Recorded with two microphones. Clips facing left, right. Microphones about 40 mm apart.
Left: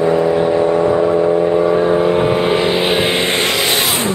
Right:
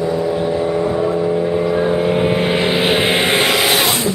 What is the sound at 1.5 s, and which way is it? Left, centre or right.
Vehicle, centre.